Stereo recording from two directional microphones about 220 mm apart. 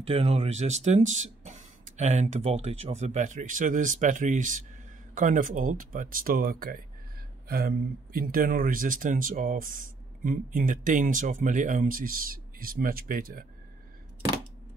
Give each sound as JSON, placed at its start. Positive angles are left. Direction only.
{"t": 0.0, "sound": "speech", "side_deg": -25}